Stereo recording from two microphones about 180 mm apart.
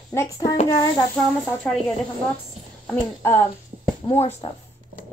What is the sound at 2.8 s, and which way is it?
Speech, 10° left (ahead or behind).